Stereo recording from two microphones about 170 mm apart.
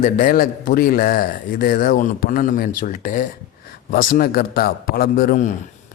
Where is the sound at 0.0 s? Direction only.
55° left (ahead or behind).